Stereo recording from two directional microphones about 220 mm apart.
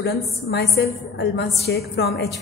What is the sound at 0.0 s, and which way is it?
A woman's voice, 50° left (ahead or behind).